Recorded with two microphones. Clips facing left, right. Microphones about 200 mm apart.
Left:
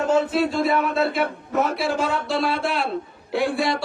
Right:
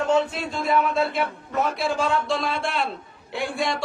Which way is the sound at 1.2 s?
60° left (ahead or behind).